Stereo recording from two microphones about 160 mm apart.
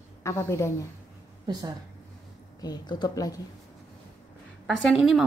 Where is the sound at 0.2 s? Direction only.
15° left (ahead or behind).